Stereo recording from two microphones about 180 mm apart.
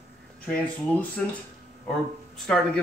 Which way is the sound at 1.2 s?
5° left (ahead or behind).